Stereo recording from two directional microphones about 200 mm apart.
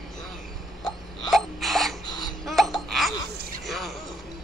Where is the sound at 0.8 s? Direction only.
Centre (ahead or behind).